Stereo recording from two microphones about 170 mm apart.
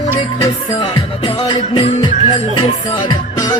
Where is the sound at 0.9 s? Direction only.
25° left (ahead or behind).